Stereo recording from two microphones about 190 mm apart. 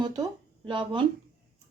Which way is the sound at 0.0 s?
25° right (ahead or behind).